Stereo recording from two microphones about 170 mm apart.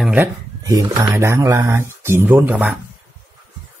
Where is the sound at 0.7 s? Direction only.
25° right (ahead or behind); by 2.7 s 10° right (ahead or behind).